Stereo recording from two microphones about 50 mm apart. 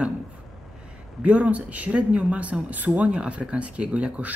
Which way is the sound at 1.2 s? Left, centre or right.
Right.